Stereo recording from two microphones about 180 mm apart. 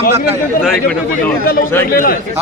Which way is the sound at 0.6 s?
5° left (ahead or behind).